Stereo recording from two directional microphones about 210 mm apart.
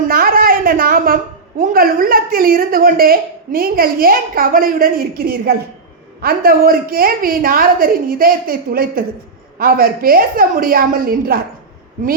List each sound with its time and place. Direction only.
0.1 s a woman's voice: 45° right (ahead or behind)